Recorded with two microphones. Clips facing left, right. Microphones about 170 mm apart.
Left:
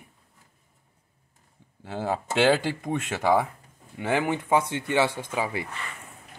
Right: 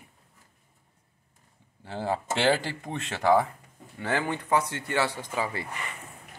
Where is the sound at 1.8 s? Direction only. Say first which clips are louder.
Left 1 dB; 10° left (ahead or behind).